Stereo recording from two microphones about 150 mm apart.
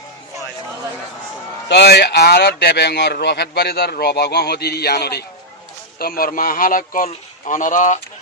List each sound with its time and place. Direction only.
1.7 s speech: 90° left
6.0 s a man's voice: 75° left (ahead or behind); by 7.9 s 55° left (ahead or behind)